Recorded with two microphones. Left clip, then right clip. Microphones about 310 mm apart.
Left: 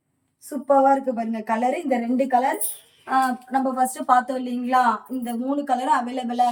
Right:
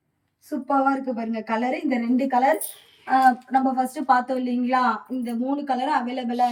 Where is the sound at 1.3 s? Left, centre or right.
Left.